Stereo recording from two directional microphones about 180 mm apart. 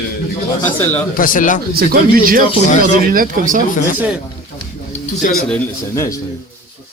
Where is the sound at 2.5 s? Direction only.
40° left (ahead or behind).